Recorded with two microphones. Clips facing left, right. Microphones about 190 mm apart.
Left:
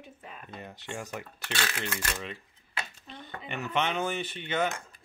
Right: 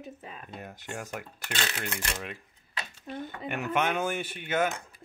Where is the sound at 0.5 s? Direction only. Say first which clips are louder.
Even; 5° right (ahead or behind).